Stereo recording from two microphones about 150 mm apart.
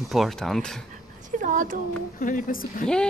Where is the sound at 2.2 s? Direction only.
60° left (ahead or behind).